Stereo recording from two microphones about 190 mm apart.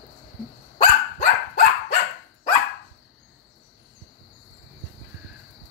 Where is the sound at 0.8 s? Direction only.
45° left (ahead or behind).